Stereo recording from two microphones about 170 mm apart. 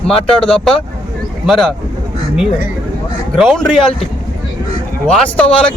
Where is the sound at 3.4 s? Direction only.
Centre (ahead or behind).